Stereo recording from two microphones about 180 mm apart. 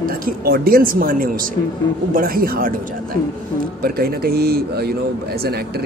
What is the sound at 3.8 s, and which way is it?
A man's voice, 55° right (ahead or behind).